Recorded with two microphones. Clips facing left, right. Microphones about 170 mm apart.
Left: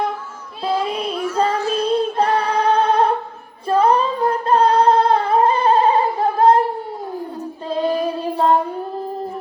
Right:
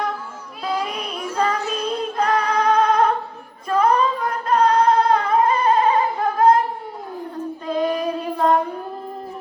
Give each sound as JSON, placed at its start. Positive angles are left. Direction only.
{"t": 0.6, "sound": "child singing", "side_deg": 30}
{"t": 3.7, "sound": "singing", "side_deg": 30}
{"t": 7.7, "sound": "child singing", "side_deg": 30}